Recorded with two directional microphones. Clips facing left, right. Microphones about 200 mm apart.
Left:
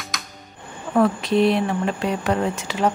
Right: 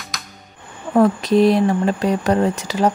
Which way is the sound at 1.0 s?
40° right (ahead or behind).